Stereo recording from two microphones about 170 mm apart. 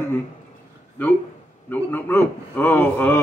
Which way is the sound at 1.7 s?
10° left (ahead or behind).